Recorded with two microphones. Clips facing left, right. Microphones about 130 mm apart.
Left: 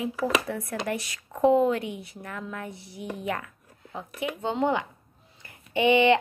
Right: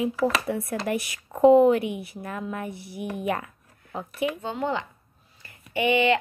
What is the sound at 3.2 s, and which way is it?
Speech, 25° right (ahead or behind).